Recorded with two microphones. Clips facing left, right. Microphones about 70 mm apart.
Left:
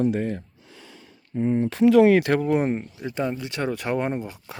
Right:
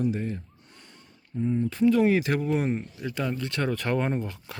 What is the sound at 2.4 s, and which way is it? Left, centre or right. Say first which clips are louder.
Speech: left 4 dB; left.